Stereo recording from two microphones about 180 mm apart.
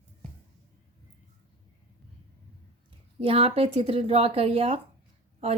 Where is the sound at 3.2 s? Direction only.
30° right (ahead or behind).